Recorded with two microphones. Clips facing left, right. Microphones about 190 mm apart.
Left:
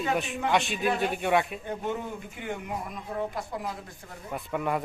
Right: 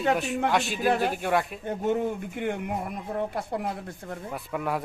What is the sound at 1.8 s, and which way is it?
A man's voice, 50° right (ahead or behind).